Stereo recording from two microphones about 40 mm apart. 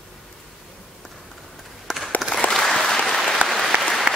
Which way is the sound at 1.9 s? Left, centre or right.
Centre.